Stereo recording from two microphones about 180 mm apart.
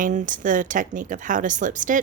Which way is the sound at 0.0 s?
45° right (ahead or behind).